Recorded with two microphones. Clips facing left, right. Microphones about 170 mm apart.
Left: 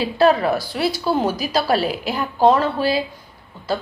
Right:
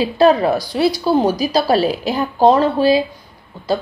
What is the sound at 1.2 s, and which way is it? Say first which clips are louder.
Speech: right 4 dB; 35° right (ahead or behind).